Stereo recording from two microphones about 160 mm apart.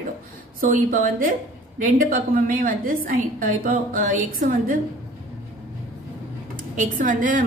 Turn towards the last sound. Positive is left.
turn(degrees=-55)  # may be behind; listen again after turning